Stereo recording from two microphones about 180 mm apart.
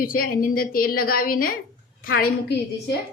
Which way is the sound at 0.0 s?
55° left (ahead or behind).